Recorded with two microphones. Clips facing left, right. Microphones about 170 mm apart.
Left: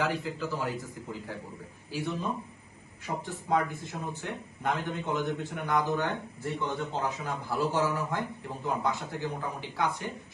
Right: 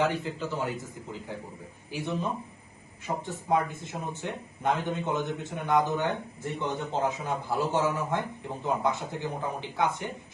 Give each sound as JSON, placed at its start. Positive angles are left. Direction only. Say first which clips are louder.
{"t": 0.0, "sound": "speech", "louder": "right 3 dB", "side_deg": -25}
{"t": 1.9, "sound": "speech", "louder": "even", "side_deg": -20}
{"t": 3.2, "sound": "speech", "louder": "right 1 dB", "side_deg": -20}